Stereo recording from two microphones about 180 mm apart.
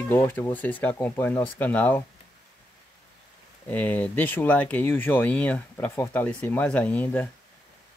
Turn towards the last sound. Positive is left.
turn(degrees=10)  # may be behind; listen again after turning